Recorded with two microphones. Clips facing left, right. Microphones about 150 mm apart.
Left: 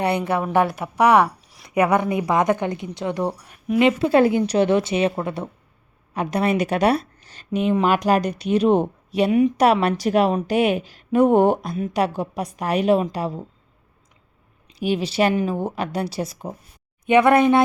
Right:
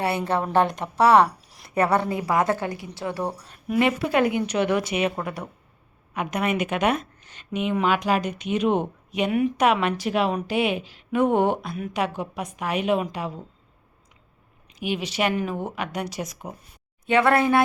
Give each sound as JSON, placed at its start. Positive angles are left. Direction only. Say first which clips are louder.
{"t": 0.0, "sound": "a woman's voice", "louder": "left 3 dB", "side_deg": 15}
{"t": 1.4, "sound": "a sound", "louder": "left 1 dB", "side_deg": 0}
{"t": 1.7, "sound": "a woman's voice", "louder": "left 3 dB", "side_deg": 10}
{"t": 14.8, "sound": "a woman's voice", "louder": "left 5 dB", "side_deg": 35}
{"t": 17.1, "sound": "a woman's voice", "louder": "left 4 dB", "side_deg": 20}